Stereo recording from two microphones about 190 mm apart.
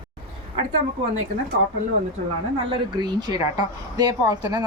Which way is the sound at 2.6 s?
20° right (ahead or behind).